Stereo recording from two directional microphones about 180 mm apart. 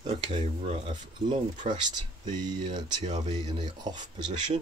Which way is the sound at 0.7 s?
35° right (ahead or behind).